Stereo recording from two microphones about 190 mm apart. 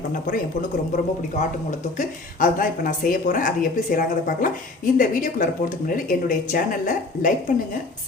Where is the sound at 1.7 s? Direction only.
45° left (ahead or behind).